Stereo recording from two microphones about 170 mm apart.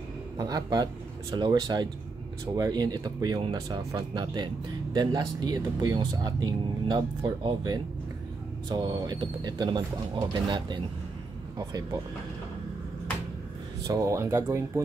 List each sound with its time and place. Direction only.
0.4 s speech: 20° right (ahead or behind)
13.8 s speech: 20° right (ahead or behind)